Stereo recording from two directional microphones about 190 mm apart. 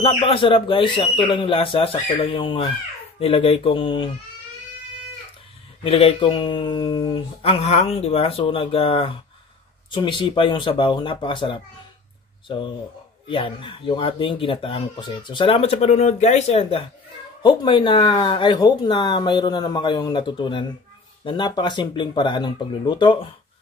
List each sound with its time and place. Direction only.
0.0 s speech: 30° left (ahead or behind)
5.9 s speech: 30° left (ahead or behind)